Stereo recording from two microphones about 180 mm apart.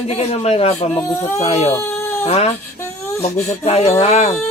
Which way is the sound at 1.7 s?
15° left (ahead or behind).